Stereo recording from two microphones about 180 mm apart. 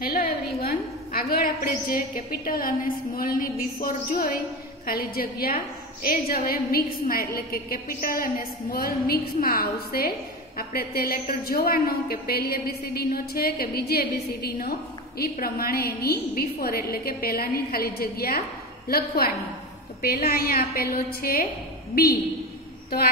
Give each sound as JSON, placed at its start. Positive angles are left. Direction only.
{"t": 0.0, "sound": "a woman's voice", "side_deg": 55}